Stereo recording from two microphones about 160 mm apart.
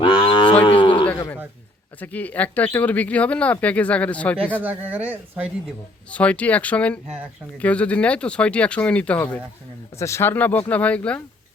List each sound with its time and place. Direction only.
0.0 s moo: 30° left (ahead or behind)
2.0 s speech: 10° left (ahead or behind)
4.6 s speech: 10° right (ahead or behind)
6.1 s speech: 10° left (ahead or behind)